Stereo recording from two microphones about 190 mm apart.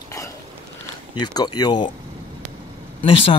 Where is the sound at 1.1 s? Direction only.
20° left (ahead or behind).